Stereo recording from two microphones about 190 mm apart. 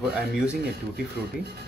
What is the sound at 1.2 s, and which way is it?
Speech, 60° right (ahead or behind).